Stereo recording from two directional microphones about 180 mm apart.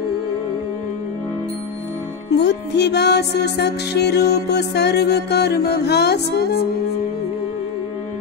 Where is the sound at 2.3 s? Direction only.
70° left (ahead or behind).